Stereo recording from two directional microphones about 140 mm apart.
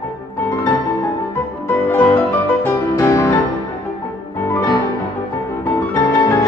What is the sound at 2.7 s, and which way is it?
Music, 20° left (ahead or behind).